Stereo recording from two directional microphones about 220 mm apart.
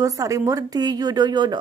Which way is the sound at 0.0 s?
15° right (ahead or behind).